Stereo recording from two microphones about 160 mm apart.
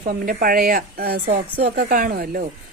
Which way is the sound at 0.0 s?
60° right (ahead or behind).